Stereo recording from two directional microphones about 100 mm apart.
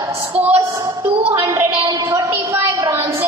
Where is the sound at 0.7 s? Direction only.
40° right (ahead or behind).